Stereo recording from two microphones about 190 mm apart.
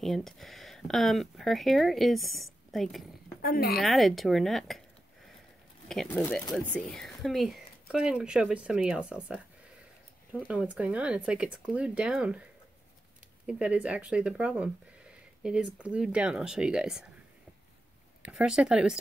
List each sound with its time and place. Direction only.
0.0 s speech: centre (ahead or behind)
3.4 s a woman's voice: 55° left (ahead or behind)
3.8 s speech: centre (ahead or behind)
5.9 s speech: 5° left (ahead or behind)
13.5 s speech: 5° right (ahead or behind)
18.2 s speech: 5° right (ahead or behind)